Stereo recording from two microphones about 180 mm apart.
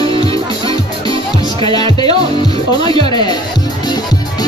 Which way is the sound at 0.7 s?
25° left (ahead or behind).